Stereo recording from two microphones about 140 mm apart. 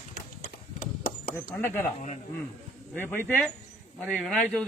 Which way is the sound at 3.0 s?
10° left (ahead or behind).